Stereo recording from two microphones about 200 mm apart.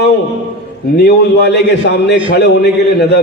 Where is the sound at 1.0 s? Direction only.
55° left (ahead or behind).